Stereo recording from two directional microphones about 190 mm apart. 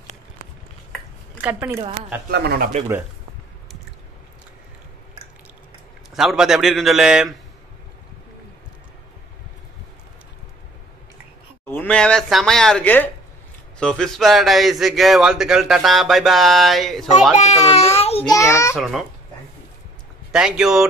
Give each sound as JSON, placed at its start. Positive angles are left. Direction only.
{"t": 1.4, "sound": "speech", "side_deg": -10}
{"t": 2.2, "sound": "speech", "side_deg": -55}
{"t": 6.1, "sound": "speech", "side_deg": 0}
{"t": 11.7, "sound": "speech", "side_deg": 10}
{"t": 17.4, "sound": "a child's voice", "side_deg": 35}
{"t": 18.3, "sound": "a child's voice", "side_deg": 15}
{"t": 18.8, "sound": "speech", "side_deg": 0}
{"t": 20.2, "sound": "speech", "side_deg": 0}